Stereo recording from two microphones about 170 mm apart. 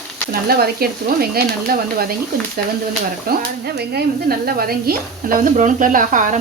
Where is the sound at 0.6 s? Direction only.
65° right (ahead or behind).